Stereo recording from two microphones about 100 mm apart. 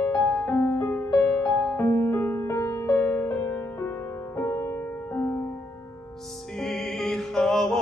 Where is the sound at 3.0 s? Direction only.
15° left (ahead or behind).